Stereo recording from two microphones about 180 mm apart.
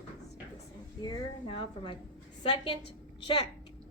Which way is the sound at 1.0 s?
30° left (ahead or behind).